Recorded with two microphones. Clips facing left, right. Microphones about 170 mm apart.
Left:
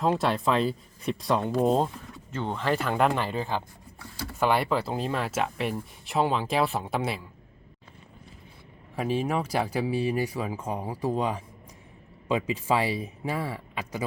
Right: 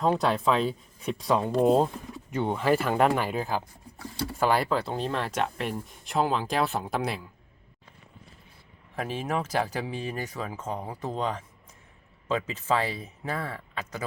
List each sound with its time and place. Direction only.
0.0 s speech: centre (ahead or behind)
9.0 s speech: 10° left (ahead or behind)